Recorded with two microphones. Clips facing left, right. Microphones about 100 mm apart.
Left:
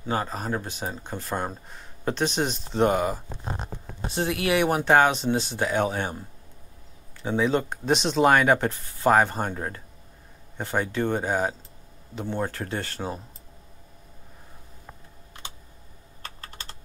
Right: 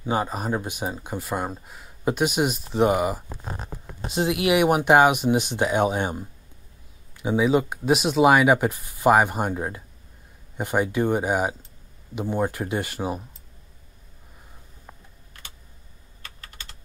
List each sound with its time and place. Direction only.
0.0 s speech: 15° right (ahead or behind)
15.3 s computer keyboard: 20° left (ahead or behind)
16.2 s typing: 35° left (ahead or behind)